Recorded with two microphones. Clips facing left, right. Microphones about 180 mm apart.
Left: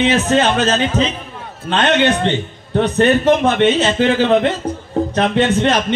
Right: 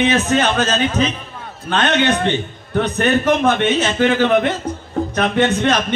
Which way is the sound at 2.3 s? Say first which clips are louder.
Left 1 dB; 25° left (ahead or behind).